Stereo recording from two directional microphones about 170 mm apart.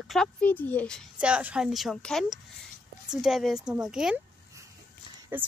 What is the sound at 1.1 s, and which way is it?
A woman's voice, 5° right (ahead or behind).